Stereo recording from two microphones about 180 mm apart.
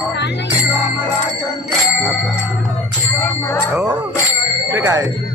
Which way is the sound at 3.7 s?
10° right (ahead or behind).